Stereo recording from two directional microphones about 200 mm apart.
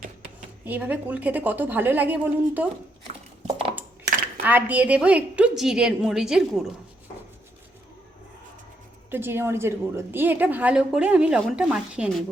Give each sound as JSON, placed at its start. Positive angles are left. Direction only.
{"t": 0.6, "sound": "a woman's voice", "side_deg": -10}
{"t": 3.4, "sound": "a sound", "side_deg": -30}
{"t": 4.4, "sound": "a woman's voice", "side_deg": -10}
{"t": 9.0, "sound": "a woman's voice", "side_deg": -10}